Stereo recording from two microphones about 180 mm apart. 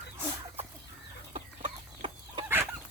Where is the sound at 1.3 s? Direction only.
30° right (ahead or behind).